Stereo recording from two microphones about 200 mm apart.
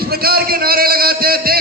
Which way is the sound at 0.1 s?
50° right (ahead or behind).